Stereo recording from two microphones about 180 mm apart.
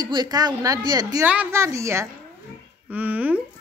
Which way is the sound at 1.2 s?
10° right (ahead or behind).